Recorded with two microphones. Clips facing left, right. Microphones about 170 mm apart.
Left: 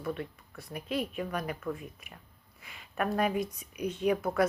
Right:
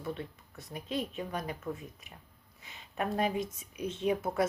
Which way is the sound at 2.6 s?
25° right (ahead or behind).